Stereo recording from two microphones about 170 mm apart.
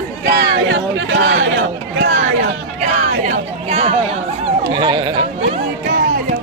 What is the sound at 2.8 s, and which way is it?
Music, 40° right (ahead or behind).